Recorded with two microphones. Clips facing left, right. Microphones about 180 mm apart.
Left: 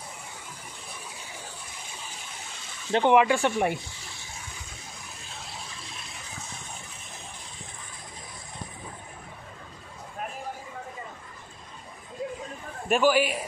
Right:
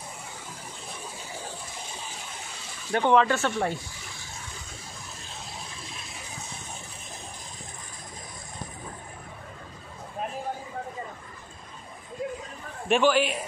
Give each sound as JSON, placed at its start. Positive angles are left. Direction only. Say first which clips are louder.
{"t": 2.9, "sound": "speech", "louder": "left 1 dB", "side_deg": 15}
{"t": 12.8, "sound": "a man's voice", "louder": "even", "side_deg": 5}